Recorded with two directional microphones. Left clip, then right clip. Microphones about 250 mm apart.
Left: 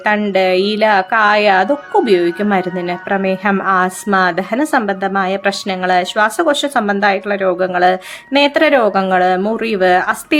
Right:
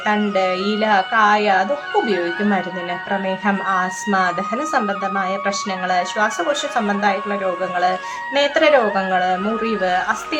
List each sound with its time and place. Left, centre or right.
0.0 s speech: left